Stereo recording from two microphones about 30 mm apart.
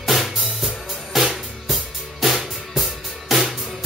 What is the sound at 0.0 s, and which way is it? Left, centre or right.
Drum, centre.